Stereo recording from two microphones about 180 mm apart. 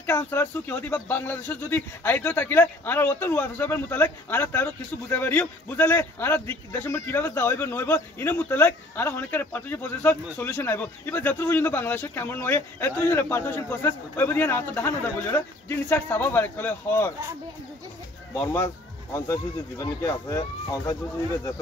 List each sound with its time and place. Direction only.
0.0 s speech: 10° left (ahead or behind)
18.3 s speech: 15° left (ahead or behind)